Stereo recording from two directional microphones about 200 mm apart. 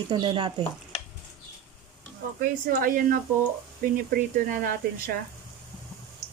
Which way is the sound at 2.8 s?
45° right (ahead or behind).